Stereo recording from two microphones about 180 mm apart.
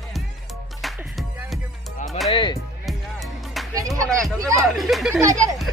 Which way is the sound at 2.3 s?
25° left (ahead or behind).